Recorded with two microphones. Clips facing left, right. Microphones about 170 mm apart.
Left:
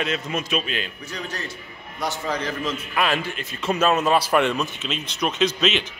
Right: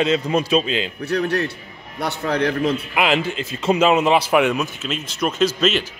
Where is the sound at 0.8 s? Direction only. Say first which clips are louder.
Right 10 dB; 65° right (ahead or behind).